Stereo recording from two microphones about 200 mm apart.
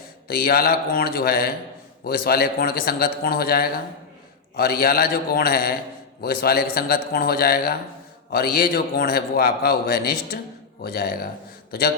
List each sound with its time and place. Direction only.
0.3 s a man's voice: 50° left (ahead or behind)